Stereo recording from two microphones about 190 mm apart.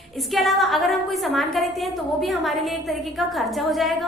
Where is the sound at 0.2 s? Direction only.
Centre (ahead or behind).